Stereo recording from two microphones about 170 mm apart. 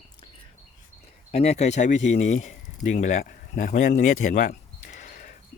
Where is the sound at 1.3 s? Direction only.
40° left (ahead or behind).